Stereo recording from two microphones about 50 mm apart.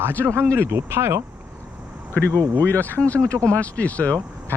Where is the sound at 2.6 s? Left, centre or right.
Left.